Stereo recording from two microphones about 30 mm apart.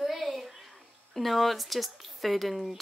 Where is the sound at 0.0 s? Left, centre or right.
Centre.